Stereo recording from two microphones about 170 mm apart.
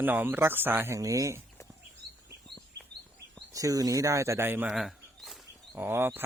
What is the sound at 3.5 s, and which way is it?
Speech, 20° right (ahead or behind).